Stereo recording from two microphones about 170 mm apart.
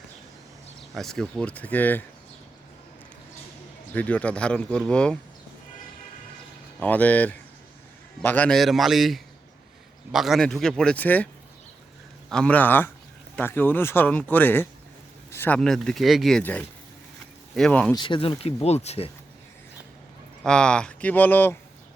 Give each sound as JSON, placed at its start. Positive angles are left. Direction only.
{"t": 0.9, "sound": "speech", "side_deg": 0}
{"t": 3.9, "sound": "speech", "side_deg": 10}
{"t": 6.7, "sound": "speech", "side_deg": 10}
{"t": 12.3, "sound": "speech", "side_deg": 5}
{"t": 17.9, "sound": "speech", "side_deg": 30}
{"t": 20.4, "sound": "speech", "side_deg": 5}